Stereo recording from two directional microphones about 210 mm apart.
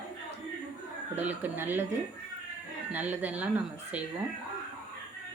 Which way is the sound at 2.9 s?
10° right (ahead or behind).